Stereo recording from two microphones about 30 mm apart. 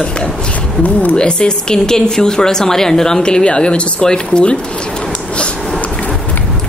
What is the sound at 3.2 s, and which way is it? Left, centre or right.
Speech, left.